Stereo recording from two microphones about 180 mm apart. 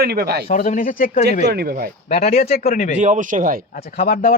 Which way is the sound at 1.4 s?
60° right (ahead or behind).